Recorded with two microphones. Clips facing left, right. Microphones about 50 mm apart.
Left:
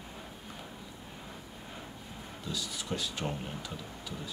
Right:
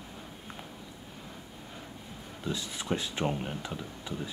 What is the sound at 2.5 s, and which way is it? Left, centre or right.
Speech, right.